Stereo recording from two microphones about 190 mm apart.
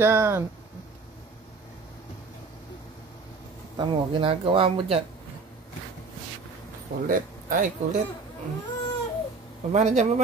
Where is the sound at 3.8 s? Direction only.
25° right (ahead or behind).